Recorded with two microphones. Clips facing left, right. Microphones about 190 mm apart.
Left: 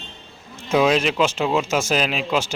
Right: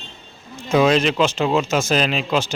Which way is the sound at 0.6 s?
5° left (ahead or behind).